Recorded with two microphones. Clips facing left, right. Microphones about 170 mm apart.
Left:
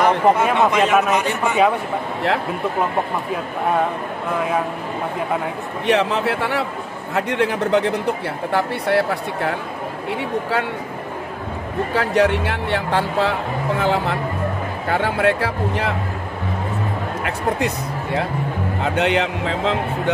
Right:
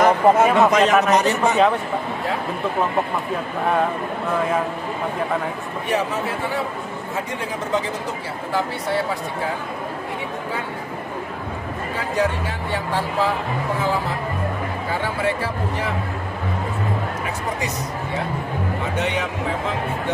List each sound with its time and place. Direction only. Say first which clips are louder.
0.0 s speech: right 1 dB; 40° right (ahead or behind)
5.9 s speech: left 5 dB; 70° left (ahead or behind)
11.9 s speech: left 5 dB; 75° left (ahead or behind)
17.2 s speech: left 5 dB; 65° left (ahead or behind); by 19.8 s 85° left